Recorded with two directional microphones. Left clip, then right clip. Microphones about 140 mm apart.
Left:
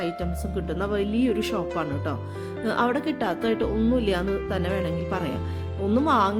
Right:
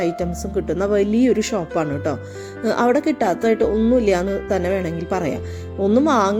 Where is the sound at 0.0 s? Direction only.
20° right (ahead or behind).